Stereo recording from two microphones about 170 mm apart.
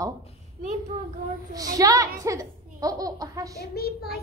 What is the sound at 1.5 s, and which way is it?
A child's voice, 20° right (ahead or behind).